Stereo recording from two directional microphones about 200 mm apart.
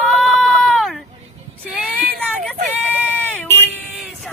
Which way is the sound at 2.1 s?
5° left (ahead or behind).